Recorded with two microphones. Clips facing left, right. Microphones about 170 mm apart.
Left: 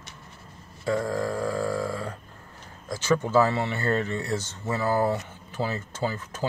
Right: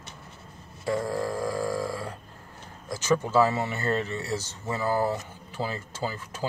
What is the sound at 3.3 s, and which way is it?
Speech, 5° right (ahead or behind).